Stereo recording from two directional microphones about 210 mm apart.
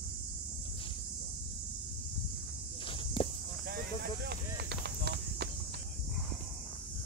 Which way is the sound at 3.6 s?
50° right (ahead or behind).